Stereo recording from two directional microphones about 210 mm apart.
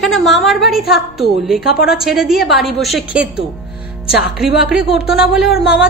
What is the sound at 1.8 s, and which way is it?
A woman's voice, centre (ahead or behind).